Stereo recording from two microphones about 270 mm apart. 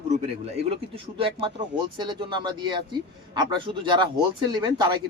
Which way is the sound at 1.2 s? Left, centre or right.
Centre.